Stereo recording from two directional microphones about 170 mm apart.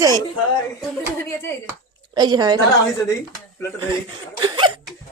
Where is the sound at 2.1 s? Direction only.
25° right (ahead or behind).